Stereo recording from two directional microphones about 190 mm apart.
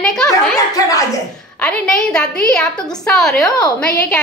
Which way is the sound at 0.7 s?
20° left (ahead or behind).